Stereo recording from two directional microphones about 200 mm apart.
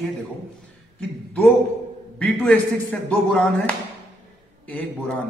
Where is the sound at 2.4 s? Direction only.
5° left (ahead or behind).